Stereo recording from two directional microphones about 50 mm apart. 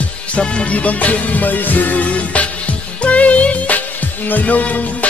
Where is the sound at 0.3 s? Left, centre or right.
Left.